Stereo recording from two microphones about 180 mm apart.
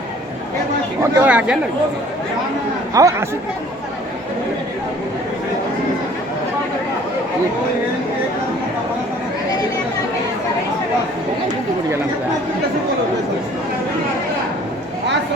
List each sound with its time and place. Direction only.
1.1 s speech: 10° right (ahead or behind)
2.9 s speech: 20° right (ahead or behind)